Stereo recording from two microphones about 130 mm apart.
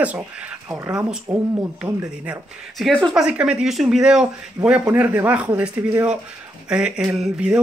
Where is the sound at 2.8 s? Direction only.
Centre (ahead or behind).